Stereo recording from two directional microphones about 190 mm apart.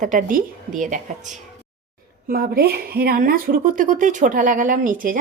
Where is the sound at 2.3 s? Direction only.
55° right (ahead or behind).